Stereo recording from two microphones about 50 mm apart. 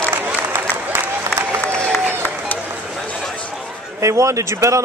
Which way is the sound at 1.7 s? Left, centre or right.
Centre.